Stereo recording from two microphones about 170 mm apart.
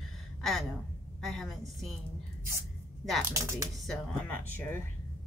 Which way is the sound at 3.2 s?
15° right (ahead or behind).